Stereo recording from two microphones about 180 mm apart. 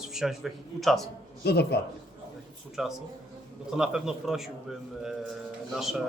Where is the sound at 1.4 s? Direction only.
65° left (ahead or behind).